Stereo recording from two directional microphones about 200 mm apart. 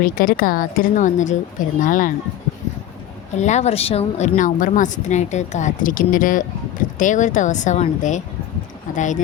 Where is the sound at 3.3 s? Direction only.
35° left (ahead or behind).